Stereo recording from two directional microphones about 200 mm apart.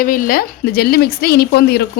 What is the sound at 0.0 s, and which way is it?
A woman's voice, 45° left (ahead or behind).